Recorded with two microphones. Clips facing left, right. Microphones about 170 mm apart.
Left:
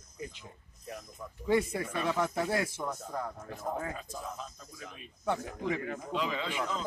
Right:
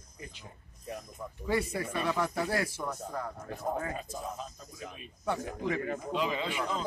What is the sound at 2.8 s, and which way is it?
Speech, 10° left (ahead or behind).